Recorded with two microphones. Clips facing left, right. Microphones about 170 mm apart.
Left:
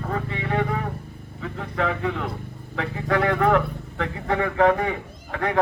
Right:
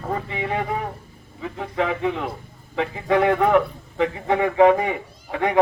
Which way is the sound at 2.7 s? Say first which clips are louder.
Right 4 dB; 10° right (ahead or behind).